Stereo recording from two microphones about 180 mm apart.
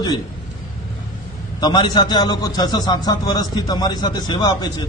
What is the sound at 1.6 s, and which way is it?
A man's voice, 25° left (ahead or behind).